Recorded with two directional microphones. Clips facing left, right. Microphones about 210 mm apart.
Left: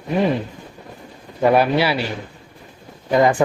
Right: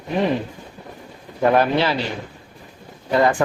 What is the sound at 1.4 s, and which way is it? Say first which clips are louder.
Speech: left 1 dB; 10° left (ahead or behind).